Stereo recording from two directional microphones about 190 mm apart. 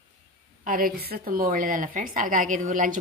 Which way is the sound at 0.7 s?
50° right (ahead or behind).